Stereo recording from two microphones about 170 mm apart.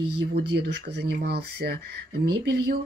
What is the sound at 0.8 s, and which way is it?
Speech, 75° right (ahead or behind).